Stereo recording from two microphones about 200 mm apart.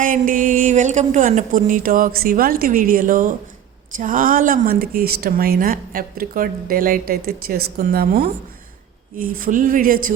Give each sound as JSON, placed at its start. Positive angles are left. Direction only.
{"t": 0.0, "sound": "a woman's voice", "side_deg": -40}
{"t": 9.4, "sound": "speech", "side_deg": -40}